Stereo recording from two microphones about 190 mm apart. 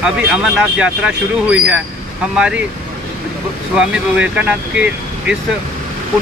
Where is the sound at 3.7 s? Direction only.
5° right (ahead or behind).